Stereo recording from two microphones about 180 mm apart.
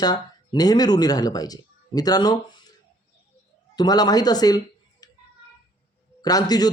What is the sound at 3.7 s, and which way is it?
Speech, 20° left (ahead or behind).